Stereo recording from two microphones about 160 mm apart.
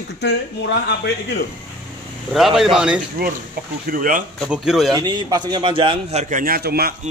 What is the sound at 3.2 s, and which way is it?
Speech, 70° right (ahead or behind).